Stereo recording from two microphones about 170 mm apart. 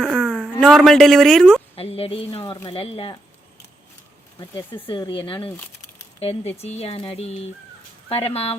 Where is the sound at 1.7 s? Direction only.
35° left (ahead or behind).